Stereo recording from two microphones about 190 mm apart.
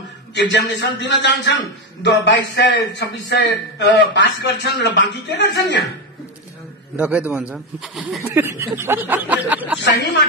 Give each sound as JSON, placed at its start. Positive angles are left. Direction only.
{"t": 0.3, "sound": "a man's voice", "side_deg": 70}
{"t": 7.0, "sound": "speech", "side_deg": -5}
{"t": 8.2, "sound": "speech", "side_deg": -15}